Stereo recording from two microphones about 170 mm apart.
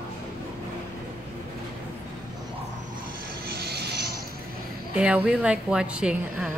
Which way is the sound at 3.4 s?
70° right (ahead or behind).